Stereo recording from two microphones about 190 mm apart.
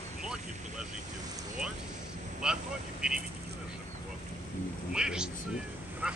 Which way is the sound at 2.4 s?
5° right (ahead or behind).